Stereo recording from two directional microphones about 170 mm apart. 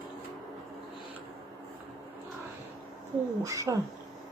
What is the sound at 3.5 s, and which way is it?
Speech, 20° right (ahead or behind).